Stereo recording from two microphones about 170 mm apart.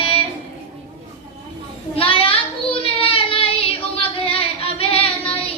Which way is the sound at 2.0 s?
30° left (ahead or behind).